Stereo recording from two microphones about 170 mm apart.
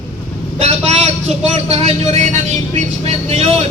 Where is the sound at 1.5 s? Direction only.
40° right (ahead or behind).